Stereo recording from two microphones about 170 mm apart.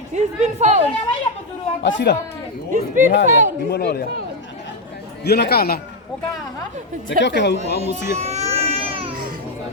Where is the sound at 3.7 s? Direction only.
65° left (ahead or behind).